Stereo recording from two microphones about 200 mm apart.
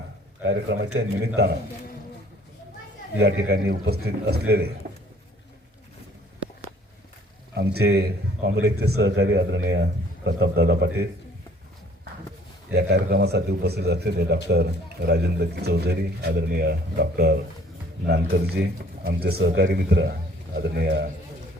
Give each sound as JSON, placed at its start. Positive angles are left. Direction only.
{"t": 0.4, "sound": "speech", "side_deg": -60}
{"t": 3.2, "sound": "speech", "side_deg": -55}
{"t": 7.5, "sound": "speech", "side_deg": -55}
{"t": 12.7, "sound": "speech", "side_deg": -55}